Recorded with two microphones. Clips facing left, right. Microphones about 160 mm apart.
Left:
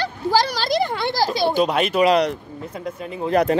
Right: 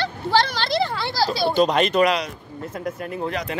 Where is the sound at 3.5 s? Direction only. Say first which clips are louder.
Left 9 dB; 40° left (ahead or behind).